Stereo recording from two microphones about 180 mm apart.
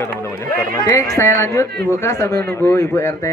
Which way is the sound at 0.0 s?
10° left (ahead or behind).